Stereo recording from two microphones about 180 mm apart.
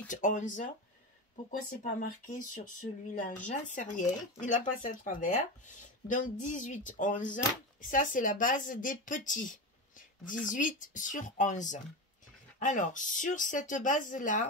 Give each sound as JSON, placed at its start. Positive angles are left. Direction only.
{"t": 0.1, "sound": "a woman's voice", "side_deg": 45}